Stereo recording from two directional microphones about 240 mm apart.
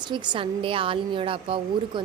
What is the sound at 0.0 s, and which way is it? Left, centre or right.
A woman's voice, centre.